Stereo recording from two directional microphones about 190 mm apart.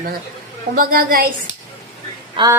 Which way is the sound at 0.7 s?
50° right (ahead or behind).